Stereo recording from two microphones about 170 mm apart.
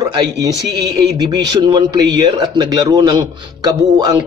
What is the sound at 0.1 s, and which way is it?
A man's voice, 25° right (ahead or behind).